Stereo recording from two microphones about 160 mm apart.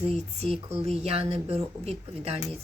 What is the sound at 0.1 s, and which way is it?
Speech, 40° right (ahead or behind).